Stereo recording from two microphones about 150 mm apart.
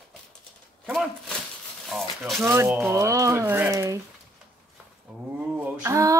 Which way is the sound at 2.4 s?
15° right (ahead or behind).